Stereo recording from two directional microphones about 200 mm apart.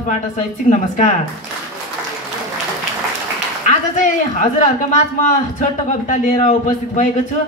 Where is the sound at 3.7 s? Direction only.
40° left (ahead or behind).